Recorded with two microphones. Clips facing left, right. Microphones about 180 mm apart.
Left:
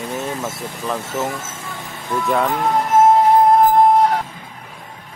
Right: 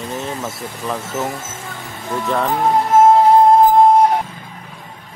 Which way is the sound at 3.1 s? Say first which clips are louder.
Right 2 dB; 30° right (ahead or behind).